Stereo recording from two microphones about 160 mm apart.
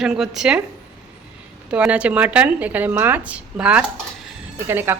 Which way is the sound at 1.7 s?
10° right (ahead or behind).